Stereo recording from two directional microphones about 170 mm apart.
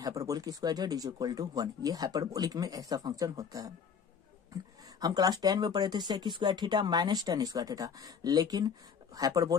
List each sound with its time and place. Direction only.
0.0 s speech: 20° right (ahead or behind)
5.0 s speech: 25° right (ahead or behind)